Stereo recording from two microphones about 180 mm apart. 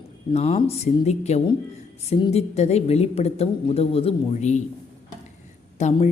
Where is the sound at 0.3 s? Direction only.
35° left (ahead or behind).